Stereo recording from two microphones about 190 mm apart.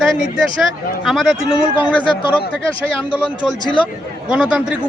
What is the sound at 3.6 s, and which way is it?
Speech, 25° left (ahead or behind).